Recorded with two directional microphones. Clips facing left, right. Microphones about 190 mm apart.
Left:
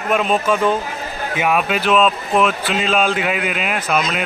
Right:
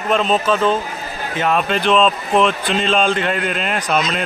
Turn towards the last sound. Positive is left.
turn(degrees=5)  # may be behind; listen again after turning